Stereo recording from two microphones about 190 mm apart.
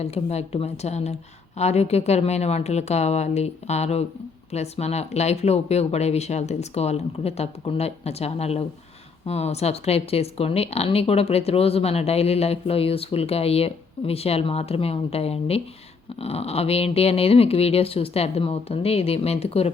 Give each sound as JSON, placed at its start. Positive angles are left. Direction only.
{"t": 0.0, "sound": "speech", "side_deg": 35}